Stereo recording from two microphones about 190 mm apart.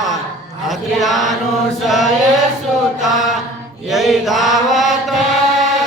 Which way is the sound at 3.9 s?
Centre (ahead or behind).